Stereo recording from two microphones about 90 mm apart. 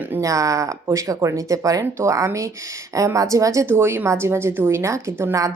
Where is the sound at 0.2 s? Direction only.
40° right (ahead or behind).